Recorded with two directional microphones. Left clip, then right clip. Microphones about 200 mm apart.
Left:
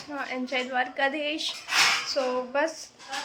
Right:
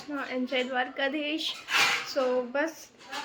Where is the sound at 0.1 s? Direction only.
5° right (ahead or behind).